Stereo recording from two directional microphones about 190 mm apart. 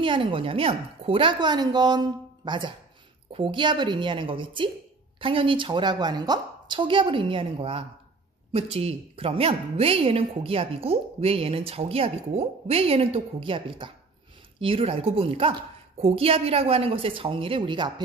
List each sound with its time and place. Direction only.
0.0 s a woman's voice: 25° right (ahead or behind)